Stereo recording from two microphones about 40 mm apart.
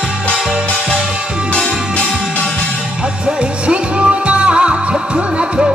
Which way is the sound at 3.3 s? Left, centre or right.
Right.